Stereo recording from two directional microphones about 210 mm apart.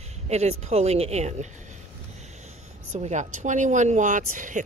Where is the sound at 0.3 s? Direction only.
30° right (ahead or behind).